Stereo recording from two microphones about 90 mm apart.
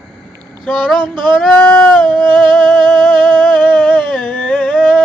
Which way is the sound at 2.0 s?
60° right (ahead or behind).